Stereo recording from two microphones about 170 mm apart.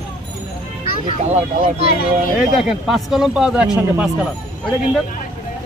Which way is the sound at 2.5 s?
Centre (ahead or behind).